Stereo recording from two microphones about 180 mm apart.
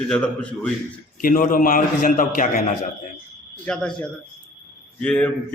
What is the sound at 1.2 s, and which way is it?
A man's voice, 50° left (ahead or behind).